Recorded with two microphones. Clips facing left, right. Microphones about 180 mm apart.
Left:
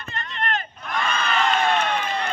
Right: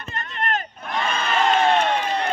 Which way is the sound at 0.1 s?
45° right (ahead or behind).